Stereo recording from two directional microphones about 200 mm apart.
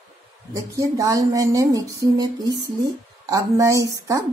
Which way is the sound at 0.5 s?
15° right (ahead or behind).